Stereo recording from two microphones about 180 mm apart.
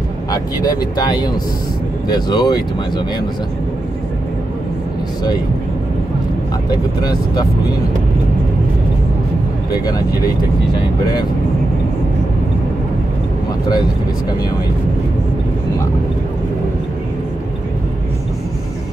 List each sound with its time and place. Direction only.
0.3 s speech: 20° left (ahead or behind)
6.7 s speech: 20° left (ahead or behind)